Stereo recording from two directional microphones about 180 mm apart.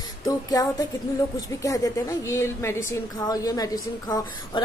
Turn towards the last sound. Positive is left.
turn(degrees=20)  # may be behind; listen again after turning